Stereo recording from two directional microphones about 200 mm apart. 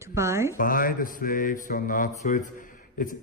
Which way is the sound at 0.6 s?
45° left (ahead or behind).